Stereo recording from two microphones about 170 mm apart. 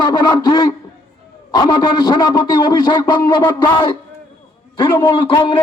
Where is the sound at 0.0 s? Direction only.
25° left (ahead or behind).